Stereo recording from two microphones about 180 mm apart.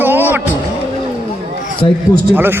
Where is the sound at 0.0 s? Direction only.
10° right (ahead or behind).